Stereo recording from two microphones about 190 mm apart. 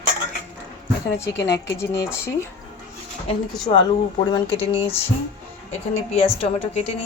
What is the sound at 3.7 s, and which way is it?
A woman's voice, 30° left (ahead or behind).